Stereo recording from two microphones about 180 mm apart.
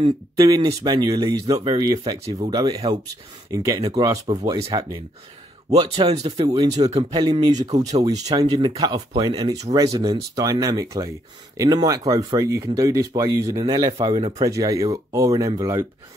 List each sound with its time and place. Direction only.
0.0 s speech: 25° right (ahead or behind)
4.3 s speech: 35° right (ahead or behind)
5.7 s speech: 35° right (ahead or behind); by 15.9 s 15° right (ahead or behind)